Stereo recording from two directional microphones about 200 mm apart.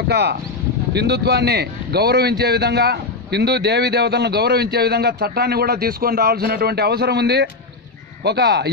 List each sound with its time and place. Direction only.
0.1 s a man's voice: 55° right (ahead or behind)